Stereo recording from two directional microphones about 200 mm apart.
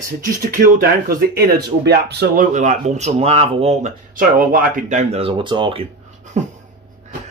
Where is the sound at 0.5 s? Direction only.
45° right (ahead or behind); by 5.8 s 25° right (ahead or behind).